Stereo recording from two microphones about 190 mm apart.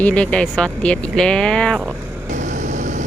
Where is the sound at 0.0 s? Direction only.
5° left (ahead or behind).